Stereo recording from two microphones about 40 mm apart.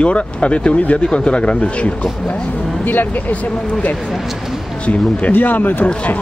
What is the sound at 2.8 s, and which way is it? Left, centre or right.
Speech, left.